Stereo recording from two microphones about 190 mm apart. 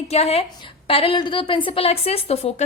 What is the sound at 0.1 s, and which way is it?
A woman's voice, 30° left (ahead or behind).